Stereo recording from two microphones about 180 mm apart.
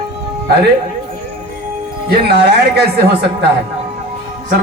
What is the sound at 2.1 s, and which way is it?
Speech, 65° right (ahead or behind).